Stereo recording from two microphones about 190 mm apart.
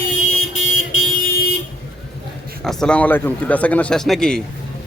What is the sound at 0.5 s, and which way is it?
Car alarm, 90° left.